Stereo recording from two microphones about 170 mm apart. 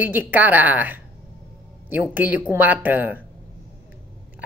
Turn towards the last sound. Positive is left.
turn(degrees=-10)  # may be behind; listen again after turning